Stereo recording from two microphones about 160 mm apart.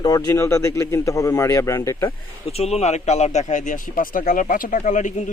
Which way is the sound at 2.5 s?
40° left (ahead or behind).